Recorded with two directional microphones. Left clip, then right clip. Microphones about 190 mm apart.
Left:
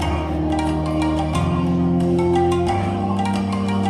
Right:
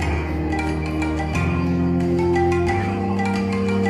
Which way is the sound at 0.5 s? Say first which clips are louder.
Left 3 dB; 45° left (ahead or behind).